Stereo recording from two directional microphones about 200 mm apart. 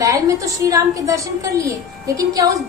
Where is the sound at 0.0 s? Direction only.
15° right (ahead or behind).